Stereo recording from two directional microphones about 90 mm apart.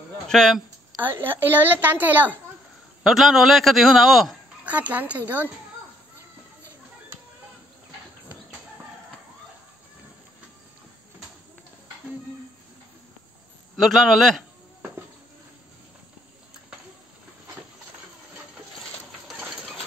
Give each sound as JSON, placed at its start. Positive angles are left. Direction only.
{"t": 0.3, "sound": "speech", "side_deg": 5}
{"t": 1.0, "sound": "a woman's voice", "side_deg": -25}
{"t": 3.0, "sound": "a man's voice", "side_deg": 0}
{"t": 4.6, "sound": "a woman's voice", "side_deg": -20}
{"t": 13.7, "sound": "a man's voice", "side_deg": 0}